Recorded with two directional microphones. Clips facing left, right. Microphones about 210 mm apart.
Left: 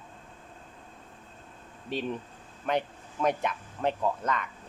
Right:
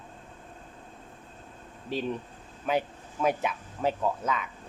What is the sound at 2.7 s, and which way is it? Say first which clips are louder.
Speech: right 1 dB; 5° right (ahead or behind).